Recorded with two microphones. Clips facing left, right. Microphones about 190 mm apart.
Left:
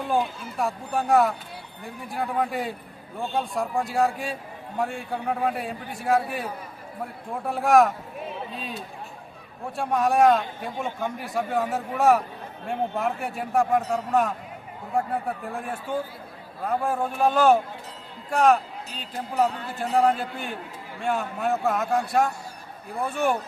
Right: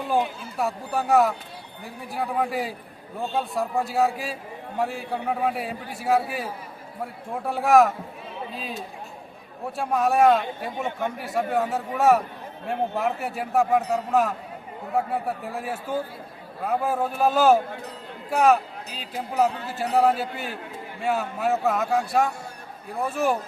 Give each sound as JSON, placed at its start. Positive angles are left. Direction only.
{"t": 0.6, "sound": "a man's voice", "side_deg": 0}
{"t": 9.7, "sound": "a man's voice", "side_deg": 0}